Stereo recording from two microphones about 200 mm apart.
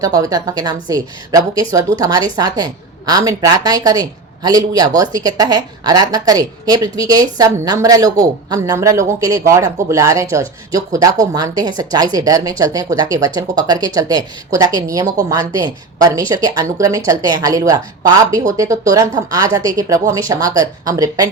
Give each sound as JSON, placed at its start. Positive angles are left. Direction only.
{"t": 0.0, "sound": "a woman's voice", "side_deg": -15}